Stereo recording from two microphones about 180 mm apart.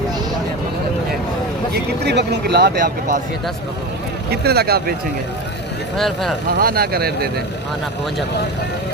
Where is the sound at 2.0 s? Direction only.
70° right (ahead or behind).